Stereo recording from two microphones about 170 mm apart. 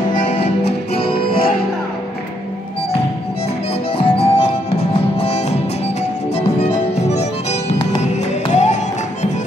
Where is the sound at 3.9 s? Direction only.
35° left (ahead or behind).